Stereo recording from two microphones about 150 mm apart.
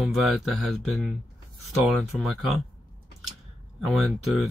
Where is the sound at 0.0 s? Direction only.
Centre (ahead or behind).